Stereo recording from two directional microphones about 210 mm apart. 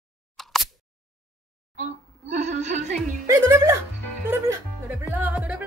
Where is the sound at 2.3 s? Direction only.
35° right (ahead or behind).